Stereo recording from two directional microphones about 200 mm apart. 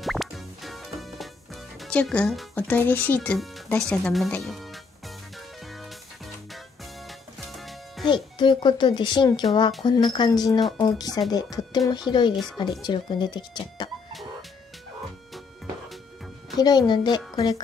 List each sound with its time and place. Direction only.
0.0 s music: centre (ahead or behind)
8.0 s speech: 25° left (ahead or behind)
16.5 s speech: 20° left (ahead or behind)